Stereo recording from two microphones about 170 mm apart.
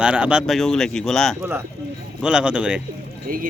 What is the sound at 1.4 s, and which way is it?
Speech, 15° right (ahead or behind).